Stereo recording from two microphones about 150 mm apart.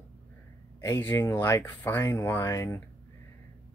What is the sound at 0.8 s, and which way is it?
Speech, 25° left (ahead or behind).